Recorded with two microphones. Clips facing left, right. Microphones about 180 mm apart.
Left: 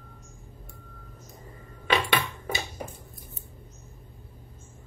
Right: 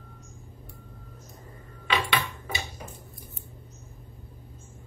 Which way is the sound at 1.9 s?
45° left (ahead or behind).